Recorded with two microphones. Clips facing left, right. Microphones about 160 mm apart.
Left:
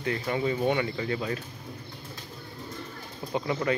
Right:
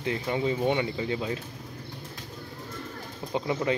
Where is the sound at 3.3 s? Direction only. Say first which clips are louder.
Even; 20° right (ahead or behind).